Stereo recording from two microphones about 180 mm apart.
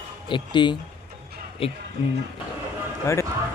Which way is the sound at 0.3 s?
25° left (ahead or behind).